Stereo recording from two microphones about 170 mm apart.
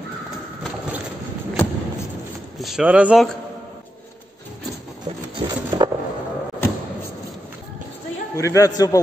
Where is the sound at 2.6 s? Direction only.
5° right (ahead or behind).